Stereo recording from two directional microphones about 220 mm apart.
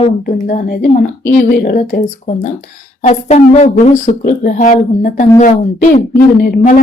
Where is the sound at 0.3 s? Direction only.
40° left (ahead or behind).